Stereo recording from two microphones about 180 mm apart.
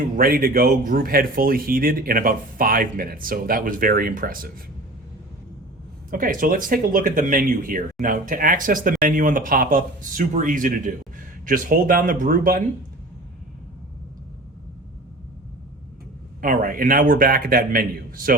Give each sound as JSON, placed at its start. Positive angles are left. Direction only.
{"t": 0.2, "sound": "speech", "side_deg": -55}
{"t": 6.1, "sound": "speech", "side_deg": -50}
{"t": 16.4, "sound": "speech", "side_deg": -50}